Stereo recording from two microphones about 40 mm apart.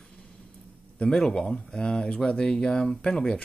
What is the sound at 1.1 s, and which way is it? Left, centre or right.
Speech, centre.